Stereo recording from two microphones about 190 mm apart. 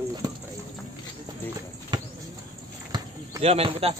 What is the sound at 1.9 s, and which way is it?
Bird flight, 20° right (ahead or behind).